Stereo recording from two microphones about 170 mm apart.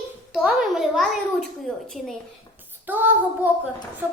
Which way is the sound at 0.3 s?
Centre (ahead or behind).